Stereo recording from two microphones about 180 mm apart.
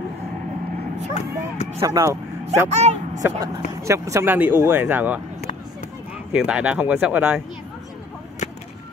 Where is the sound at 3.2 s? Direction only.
15° right (ahead or behind).